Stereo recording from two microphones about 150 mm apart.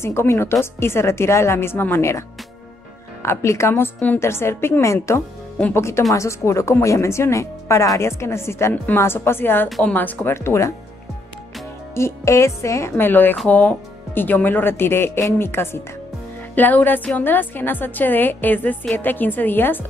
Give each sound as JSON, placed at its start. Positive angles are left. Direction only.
{"t": 0.0, "sound": "speech", "side_deg": 15}
{"t": 11.9, "sound": "speech", "side_deg": 20}